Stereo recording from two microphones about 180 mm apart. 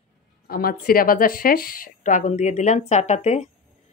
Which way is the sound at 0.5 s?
55° left (ahead or behind).